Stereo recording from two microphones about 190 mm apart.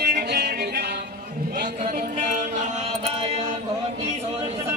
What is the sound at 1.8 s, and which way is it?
Music, 40° right (ahead or behind).